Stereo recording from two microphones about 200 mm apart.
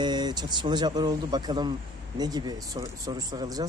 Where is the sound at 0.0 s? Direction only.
20° right (ahead or behind).